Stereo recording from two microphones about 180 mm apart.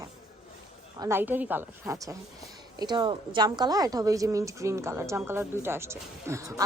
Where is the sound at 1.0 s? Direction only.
15° right (ahead or behind).